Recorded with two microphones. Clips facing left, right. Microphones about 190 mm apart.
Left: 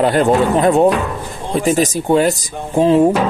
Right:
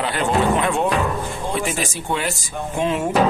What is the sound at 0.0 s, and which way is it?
Speech, 40° left (ahead or behind).